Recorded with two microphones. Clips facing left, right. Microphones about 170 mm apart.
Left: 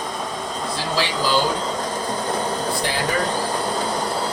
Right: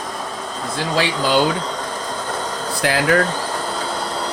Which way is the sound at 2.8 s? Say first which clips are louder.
Right 10 dB; 85° right.